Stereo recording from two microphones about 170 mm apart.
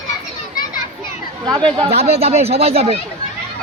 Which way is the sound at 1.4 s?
25° right (ahead or behind).